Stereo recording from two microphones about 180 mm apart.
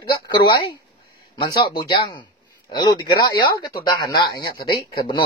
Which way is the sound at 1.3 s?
25° left (ahead or behind).